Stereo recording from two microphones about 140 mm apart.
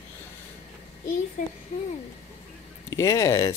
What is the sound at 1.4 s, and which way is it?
Speech, 65° left (ahead or behind).